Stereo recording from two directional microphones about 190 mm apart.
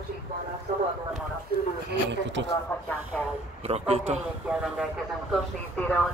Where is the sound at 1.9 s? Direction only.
70° right (ahead or behind).